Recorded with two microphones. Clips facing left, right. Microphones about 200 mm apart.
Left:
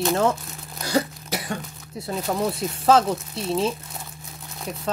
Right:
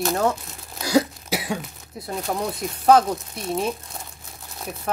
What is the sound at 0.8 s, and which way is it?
Cough, 5° right (ahead or behind).